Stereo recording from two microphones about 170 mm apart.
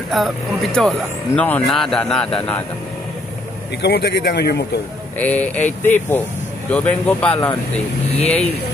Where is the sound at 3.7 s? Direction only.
75° left (ahead or behind).